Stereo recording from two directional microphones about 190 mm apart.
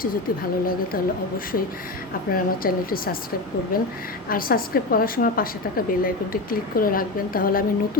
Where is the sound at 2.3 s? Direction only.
50° left (ahead or behind).